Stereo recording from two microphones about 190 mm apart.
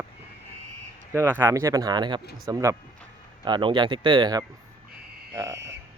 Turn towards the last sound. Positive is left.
turn(degrees=-15)  # may be behind; listen again after turning